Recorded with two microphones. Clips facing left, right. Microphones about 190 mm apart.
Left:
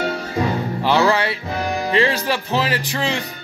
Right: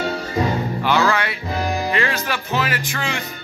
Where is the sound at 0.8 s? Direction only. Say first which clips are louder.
Left 3 dB; 30° left (ahead or behind).